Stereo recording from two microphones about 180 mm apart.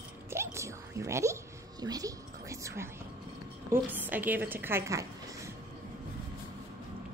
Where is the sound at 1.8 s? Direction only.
20° right (ahead or behind).